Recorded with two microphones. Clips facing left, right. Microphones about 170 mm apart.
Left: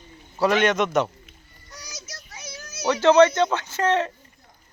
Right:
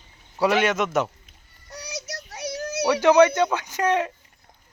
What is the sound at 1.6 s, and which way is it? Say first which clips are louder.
Child singing: right 8 dB; 65° right (ahead or behind).